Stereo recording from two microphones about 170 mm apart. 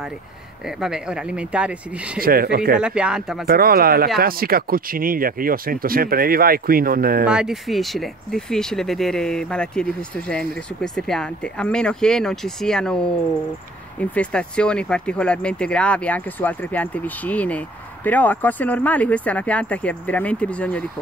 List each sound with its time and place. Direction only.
0.7 s speech: 5° right (ahead or behind)
2.1 s speech: 60° right (ahead or behind)
2.8 s speech: 5° right (ahead or behind)
3.4 s speech: 60° right (ahead or behind)
7.2 s speech: 5° right (ahead or behind)